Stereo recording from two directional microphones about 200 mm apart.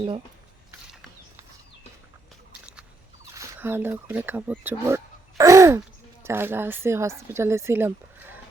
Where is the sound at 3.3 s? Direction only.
10° right (ahead or behind).